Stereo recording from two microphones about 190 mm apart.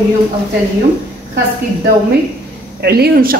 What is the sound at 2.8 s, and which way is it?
Speech, 55° right (ahead or behind).